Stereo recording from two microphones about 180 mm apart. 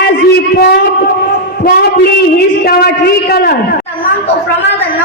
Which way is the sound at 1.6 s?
55° left (ahead or behind).